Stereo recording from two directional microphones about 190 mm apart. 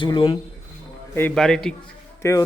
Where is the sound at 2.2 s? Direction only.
15° left (ahead or behind).